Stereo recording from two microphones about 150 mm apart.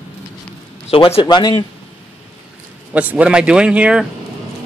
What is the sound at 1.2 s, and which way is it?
Speech, 30° left (ahead or behind).